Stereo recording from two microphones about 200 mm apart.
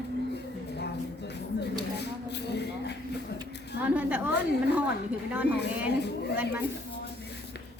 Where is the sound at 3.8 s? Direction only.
5° right (ahead or behind).